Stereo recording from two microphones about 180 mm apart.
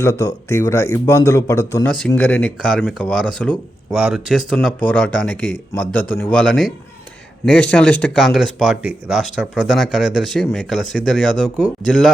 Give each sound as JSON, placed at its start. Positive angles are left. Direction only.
{"t": 0.0, "sound": "a man's voice", "side_deg": 15}
{"t": 1.9, "sound": "speech", "side_deg": 5}